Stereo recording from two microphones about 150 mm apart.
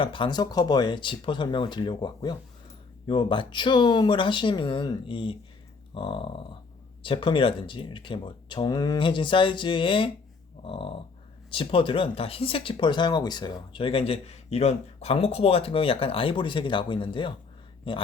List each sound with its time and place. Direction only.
0.0 s speech: 35° left (ahead or behind)
10.6 s a sound: 35° left (ahead or behind)
11.5 s speech: 35° left (ahead or behind)